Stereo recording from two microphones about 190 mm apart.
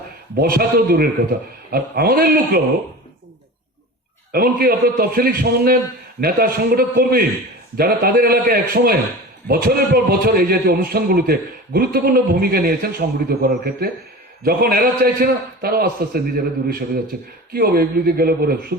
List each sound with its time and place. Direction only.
0.3 s a man's voice: 50° right (ahead or behind)
4.3 s a man's voice: 50° right (ahead or behind)